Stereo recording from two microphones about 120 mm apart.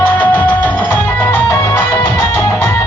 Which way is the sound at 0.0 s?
15° left (ahead or behind).